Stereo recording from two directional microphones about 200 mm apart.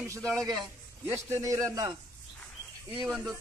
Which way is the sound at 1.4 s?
15° right (ahead or behind).